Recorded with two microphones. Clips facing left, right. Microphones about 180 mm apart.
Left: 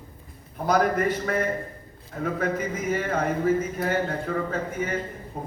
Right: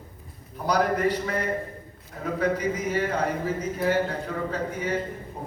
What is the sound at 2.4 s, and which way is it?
A man's voice, 50° left (ahead or behind).